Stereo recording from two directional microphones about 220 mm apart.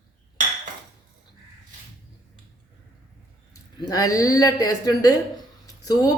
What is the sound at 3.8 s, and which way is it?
A woman's voice, 15° left (ahead or behind).